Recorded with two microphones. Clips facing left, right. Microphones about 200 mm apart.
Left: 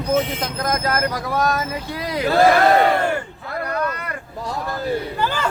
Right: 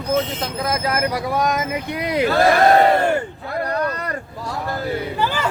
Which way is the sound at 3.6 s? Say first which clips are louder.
Right 2 dB; 35° right (ahead or behind).